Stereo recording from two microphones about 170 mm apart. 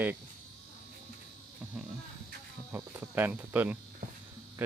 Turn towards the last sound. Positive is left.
turn(degrees=-10)  # may be behind; listen again after turning